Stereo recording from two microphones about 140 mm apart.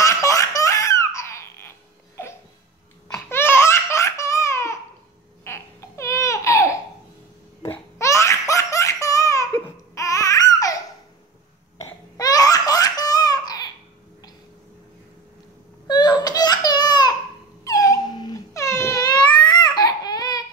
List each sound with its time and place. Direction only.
0.0 s baby laughter: 25° left (ahead or behind)
3.3 s laughter: 15° left (ahead or behind)
5.4 s baby cry: 20° left (ahead or behind)
7.6 s laughter: 20° left (ahead or behind)
11.8 s laughter: 25° left (ahead or behind)
15.9 s a sound: 30° left (ahead or behind)
17.6 s wail: 25° left (ahead or behind)
19.5 s baby cry: 30° left (ahead or behind)